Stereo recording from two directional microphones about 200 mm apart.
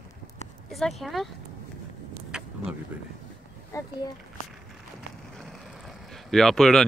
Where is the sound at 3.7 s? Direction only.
15° left (ahead or behind).